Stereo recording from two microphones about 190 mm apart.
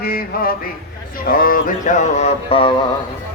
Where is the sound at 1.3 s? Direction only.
50° left (ahead or behind); by 2.7 s 30° left (ahead or behind).